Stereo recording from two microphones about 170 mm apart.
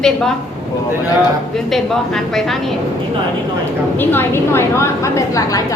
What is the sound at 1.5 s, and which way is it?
A woman's voice, centre (ahead or behind).